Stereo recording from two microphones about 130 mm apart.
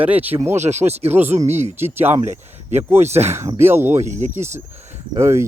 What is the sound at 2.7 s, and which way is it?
Speech, 15° right (ahead or behind).